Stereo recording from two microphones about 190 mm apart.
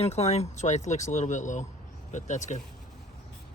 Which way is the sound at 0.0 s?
35° left (ahead or behind).